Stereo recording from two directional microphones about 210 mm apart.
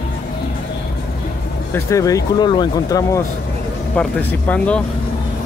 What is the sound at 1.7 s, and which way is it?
Speech, 15° left (ahead or behind).